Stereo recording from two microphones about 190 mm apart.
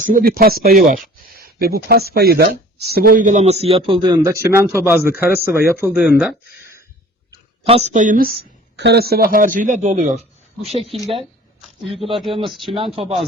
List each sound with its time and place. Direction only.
0.0 s a man's voice: 45° right (ahead or behind); by 6.3 s 5° right (ahead or behind)
7.6 s a man's voice: 30° right (ahead or behind)
12.1 s speech: centre (ahead or behind)
12.6 s a man's voice: 25° right (ahead or behind)